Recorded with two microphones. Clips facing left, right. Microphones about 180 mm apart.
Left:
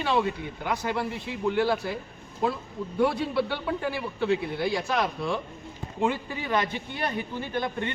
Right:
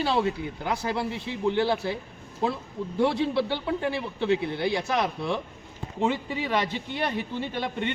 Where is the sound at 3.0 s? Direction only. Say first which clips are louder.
Right 1 dB; 25° right (ahead or behind).